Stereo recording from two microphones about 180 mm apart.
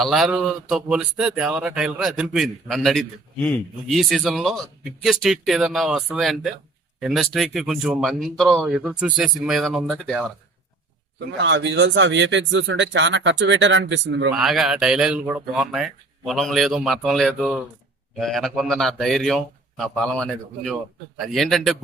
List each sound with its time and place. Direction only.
0.0 s speech: centre (ahead or behind)
11.3 s speech: 90° right
14.3 s speech: centre (ahead or behind)